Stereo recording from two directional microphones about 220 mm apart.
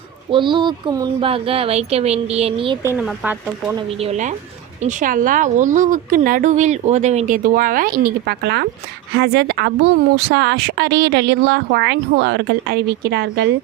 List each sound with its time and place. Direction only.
0.3 s speech: 20° right (ahead or behind)
3.0 s speech: 10° right (ahead or behind)
3.8 s a woman's voice: 30° right (ahead or behind); by 13.5 s 45° right (ahead or behind)